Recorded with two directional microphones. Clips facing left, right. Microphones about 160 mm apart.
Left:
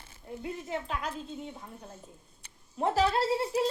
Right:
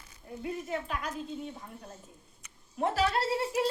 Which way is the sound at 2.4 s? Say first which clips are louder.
Even; 30° left (ahead or behind).